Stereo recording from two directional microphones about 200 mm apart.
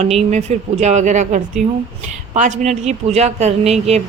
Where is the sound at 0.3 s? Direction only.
35° right (ahead or behind).